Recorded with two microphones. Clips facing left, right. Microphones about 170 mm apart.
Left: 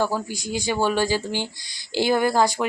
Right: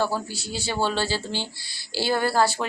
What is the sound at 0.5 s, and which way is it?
Speech, 15° left (ahead or behind).